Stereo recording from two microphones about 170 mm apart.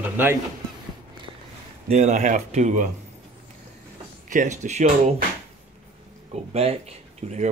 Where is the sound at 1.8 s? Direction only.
45° right (ahead or behind).